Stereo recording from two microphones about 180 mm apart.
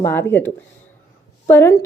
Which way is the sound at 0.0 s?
10° left (ahead or behind).